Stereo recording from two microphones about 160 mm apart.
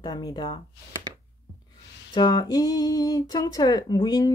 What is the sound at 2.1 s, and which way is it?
Speech, 25° left (ahead or behind).